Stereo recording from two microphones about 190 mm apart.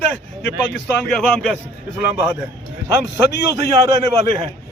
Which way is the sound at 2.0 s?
10° right (ahead or behind).